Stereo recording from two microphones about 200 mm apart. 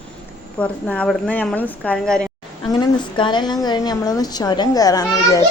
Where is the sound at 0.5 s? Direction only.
5° left (ahead or behind).